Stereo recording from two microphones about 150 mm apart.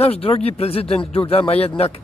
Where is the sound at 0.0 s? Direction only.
40° left (ahead or behind).